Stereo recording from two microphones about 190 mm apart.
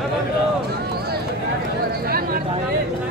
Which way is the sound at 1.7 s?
55° right (ahead or behind).